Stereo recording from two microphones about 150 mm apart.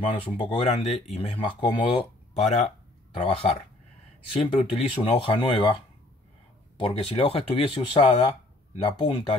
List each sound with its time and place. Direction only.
0.0 s speech: 35° left (ahead or behind)
2.3 s speech: 45° left (ahead or behind)
6.8 s speech: 35° left (ahead or behind)